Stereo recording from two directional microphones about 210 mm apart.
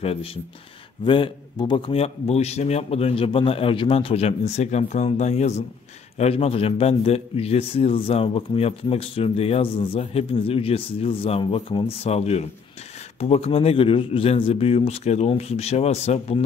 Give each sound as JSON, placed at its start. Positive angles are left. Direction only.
{"t": 0.0, "sound": "a man's voice", "side_deg": 25}